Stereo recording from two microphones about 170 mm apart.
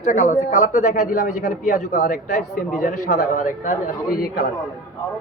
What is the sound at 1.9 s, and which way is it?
Speech, 70° left (ahead or behind).